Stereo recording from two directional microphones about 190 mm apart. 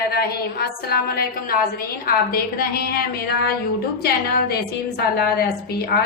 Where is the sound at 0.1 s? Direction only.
55° left (ahead or behind).